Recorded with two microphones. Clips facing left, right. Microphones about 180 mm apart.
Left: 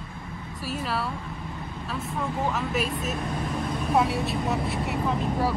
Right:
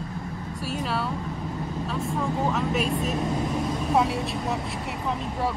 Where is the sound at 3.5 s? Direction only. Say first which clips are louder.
Right 2 dB; 5° right (ahead or behind).